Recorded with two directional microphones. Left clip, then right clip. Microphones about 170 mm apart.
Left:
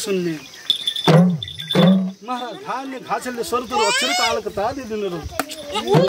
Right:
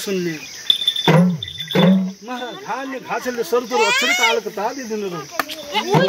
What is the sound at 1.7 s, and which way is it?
Speech, 30° left (ahead or behind).